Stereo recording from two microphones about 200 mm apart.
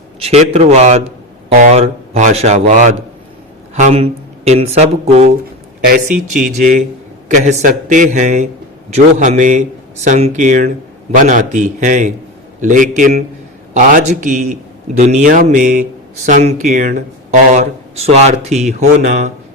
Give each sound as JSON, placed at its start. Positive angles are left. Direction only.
{"t": 0.2, "sound": "speech", "side_deg": -30}
{"t": 5.8, "sound": "speech", "side_deg": -45}